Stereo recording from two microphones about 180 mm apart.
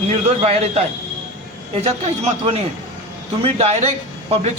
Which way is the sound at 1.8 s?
35° right (ahead or behind).